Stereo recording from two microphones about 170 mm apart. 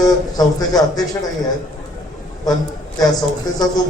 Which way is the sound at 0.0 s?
20° left (ahead or behind).